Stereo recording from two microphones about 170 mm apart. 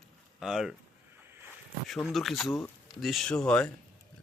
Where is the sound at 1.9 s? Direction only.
Centre (ahead or behind).